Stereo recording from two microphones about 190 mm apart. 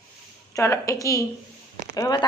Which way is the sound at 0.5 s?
15° left (ahead or behind).